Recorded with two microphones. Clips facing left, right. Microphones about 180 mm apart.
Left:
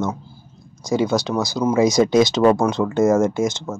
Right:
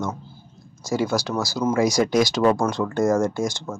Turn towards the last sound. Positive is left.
turn(degrees=20)  # may be behind; listen again after turning